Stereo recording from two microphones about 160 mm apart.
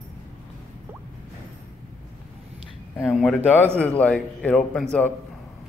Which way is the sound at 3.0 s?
Centre (ahead or behind).